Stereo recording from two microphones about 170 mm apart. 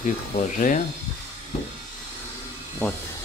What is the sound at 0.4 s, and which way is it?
Speech, 45° left (ahead or behind).